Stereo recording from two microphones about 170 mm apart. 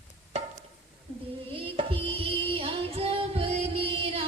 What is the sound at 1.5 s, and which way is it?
Music, 35° right (ahead or behind).